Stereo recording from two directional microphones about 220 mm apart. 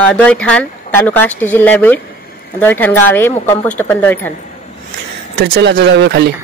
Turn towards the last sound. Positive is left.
turn(degrees=-50)  # may be behind; listen again after turning